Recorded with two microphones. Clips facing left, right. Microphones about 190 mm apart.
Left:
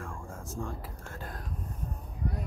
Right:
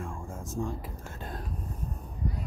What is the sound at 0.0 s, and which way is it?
Music, 20° right (ahead or behind).